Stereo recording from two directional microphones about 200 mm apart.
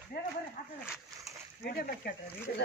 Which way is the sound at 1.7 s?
50° left (ahead or behind).